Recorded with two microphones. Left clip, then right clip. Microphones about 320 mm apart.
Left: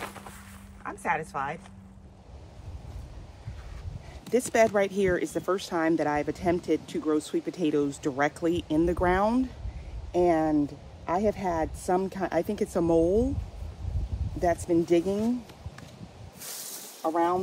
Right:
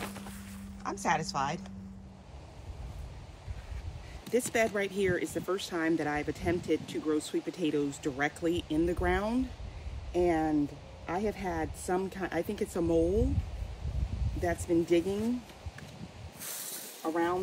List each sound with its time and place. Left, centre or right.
0.8 s a woman's voice: centre
4.3 s speech: left
14.4 s speech: left
16.3 s snake: centre